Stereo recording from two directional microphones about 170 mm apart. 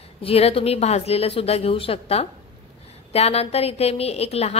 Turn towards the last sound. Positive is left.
turn(degrees=40)  # may be behind; listen again after turning